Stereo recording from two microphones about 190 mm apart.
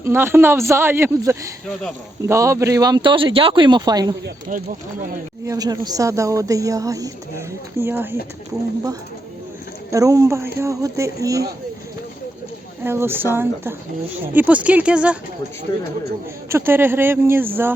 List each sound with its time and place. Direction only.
0.0 s a woman's voice: 15° right (ahead or behind)
4.4 s speech: 45° right (ahead or behind)
5.5 s a woman's voice: 20° right (ahead or behind)
9.9 s a woman's voice: 15° right (ahead or behind)
12.8 s a woman's voice: 10° right (ahead or behind)
16.5 s a woman's voice: 15° right (ahead or behind)